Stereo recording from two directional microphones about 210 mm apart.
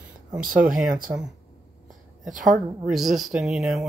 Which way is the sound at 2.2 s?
35° right (ahead or behind).